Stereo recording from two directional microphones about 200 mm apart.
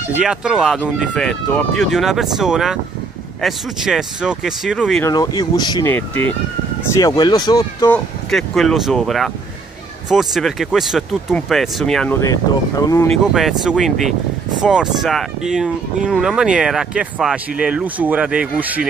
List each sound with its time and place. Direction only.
0.2 s speech: 5° right (ahead or behind)
5.0 s speech: 20° left (ahead or behind)
5.9 s speech: 10° left (ahead or behind)
7.0 s speech: 20° left (ahead or behind)
7.9 s speech: centre (ahead or behind)
12.2 s speech: 15° left (ahead or behind)
13.3 s speech: centre (ahead or behind)